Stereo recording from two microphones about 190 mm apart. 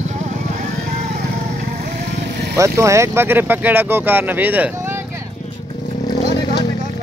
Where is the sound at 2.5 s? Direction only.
15° right (ahead or behind).